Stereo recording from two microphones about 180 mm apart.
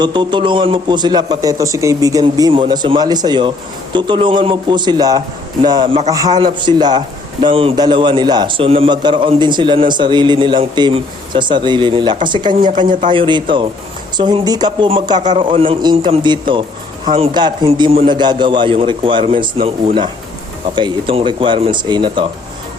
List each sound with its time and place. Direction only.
0.0 s speech: 25° right (ahead or behind)